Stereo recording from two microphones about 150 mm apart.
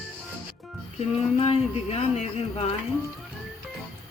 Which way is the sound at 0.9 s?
45° left (ahead or behind).